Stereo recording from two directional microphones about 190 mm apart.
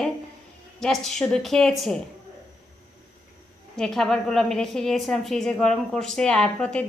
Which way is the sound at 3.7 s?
Centre (ahead or behind).